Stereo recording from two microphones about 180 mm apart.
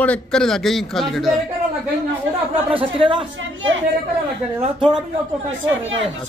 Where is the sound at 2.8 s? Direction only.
30° right (ahead or behind).